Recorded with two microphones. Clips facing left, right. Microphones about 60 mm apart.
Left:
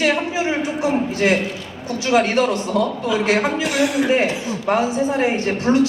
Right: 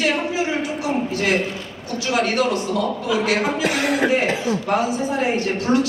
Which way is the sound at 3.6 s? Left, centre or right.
Right.